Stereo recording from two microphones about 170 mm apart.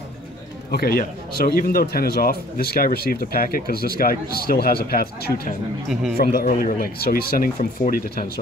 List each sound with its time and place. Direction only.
0.7 s a man's voice: 60° left (ahead or behind)